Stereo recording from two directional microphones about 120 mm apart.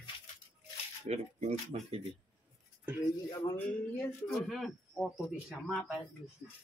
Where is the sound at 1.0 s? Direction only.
65° right (ahead or behind).